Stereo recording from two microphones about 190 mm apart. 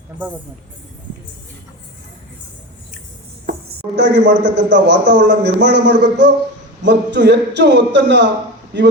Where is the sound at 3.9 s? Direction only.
65° right (ahead or behind).